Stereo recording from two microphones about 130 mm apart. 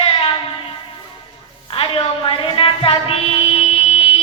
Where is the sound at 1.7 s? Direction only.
45° left (ahead or behind).